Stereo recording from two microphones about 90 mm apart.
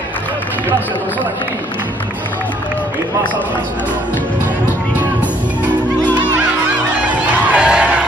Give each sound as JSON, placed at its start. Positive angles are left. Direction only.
{"t": 7.0, "sound": "music", "side_deg": -15}